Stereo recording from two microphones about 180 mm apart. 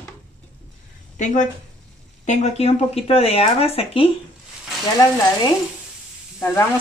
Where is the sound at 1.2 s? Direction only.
45° left (ahead or behind).